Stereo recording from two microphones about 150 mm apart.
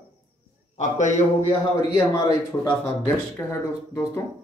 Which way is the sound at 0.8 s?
50° left (ahead or behind).